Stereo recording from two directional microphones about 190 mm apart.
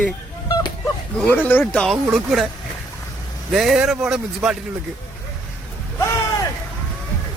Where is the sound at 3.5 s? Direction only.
Centre (ahead or behind).